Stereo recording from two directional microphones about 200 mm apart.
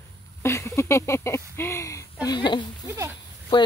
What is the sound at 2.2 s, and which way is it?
Speech, 20° left (ahead or behind).